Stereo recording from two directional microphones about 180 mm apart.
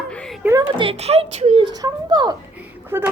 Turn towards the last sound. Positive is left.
turn(degrees=-10)  # may be behind; listen again after turning